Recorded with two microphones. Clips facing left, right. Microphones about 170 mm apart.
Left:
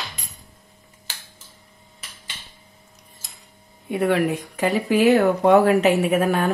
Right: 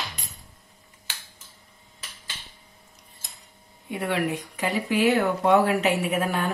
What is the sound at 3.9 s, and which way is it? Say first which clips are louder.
Speech: left 6 dB; 55° left (ahead or behind).